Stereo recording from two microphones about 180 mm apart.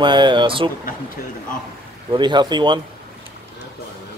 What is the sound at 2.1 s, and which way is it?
Speech, 25° right (ahead or behind).